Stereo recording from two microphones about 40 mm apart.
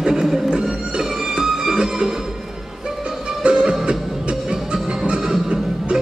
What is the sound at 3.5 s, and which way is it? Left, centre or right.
Music, centre.